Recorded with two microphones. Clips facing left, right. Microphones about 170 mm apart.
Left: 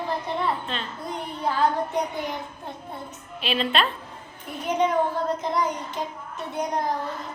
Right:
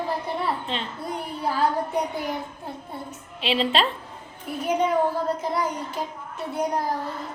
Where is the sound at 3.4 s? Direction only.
25° right (ahead or behind).